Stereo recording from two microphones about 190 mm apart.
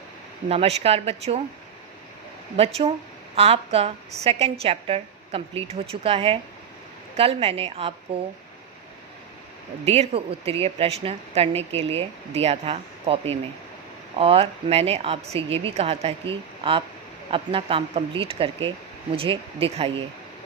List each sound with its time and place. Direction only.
0.4 s a woman's voice: 30° right (ahead or behind)
2.6 s a woman's voice: 30° right (ahead or behind)
9.8 s a woman's voice: 35° right (ahead or behind)